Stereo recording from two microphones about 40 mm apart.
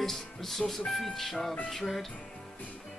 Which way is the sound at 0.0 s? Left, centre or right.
Centre.